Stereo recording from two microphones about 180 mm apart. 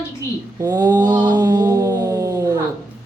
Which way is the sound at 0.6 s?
20° right (ahead or behind).